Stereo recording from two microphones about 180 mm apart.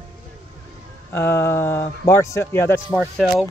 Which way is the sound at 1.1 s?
10° left (ahead or behind).